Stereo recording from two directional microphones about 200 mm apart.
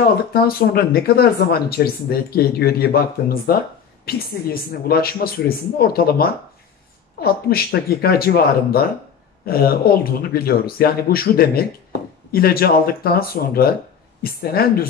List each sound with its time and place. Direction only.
0.3 s speech: 50° left (ahead or behind)